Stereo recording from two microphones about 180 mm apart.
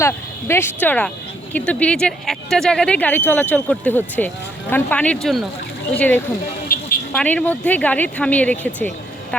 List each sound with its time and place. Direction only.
0.0 s speech: 15° left (ahead or behind)
6.7 s vehicle: 55° left (ahead or behind)
7.1 s speech: 5° left (ahead or behind)